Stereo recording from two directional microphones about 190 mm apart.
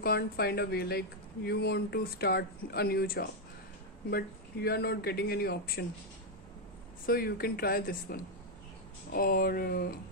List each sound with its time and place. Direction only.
0.0 s speech: 55° left (ahead or behind)
7.1 s speech: 55° left (ahead or behind)